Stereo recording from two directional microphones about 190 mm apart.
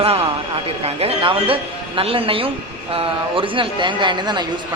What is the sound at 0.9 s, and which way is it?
Speech, 30° right (ahead or behind).